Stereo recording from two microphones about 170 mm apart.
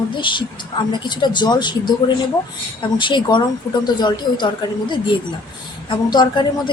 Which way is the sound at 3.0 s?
25° left (ahead or behind).